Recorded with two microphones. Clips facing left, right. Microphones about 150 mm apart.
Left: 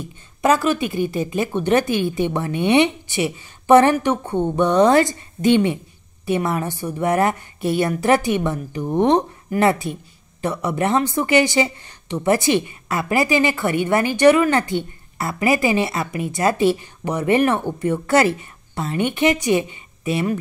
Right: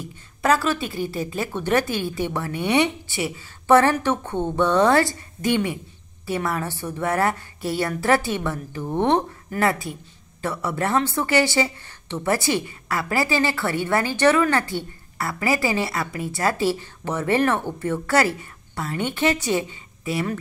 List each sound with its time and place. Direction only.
0.0 s a woman's voice: 20° left (ahead or behind)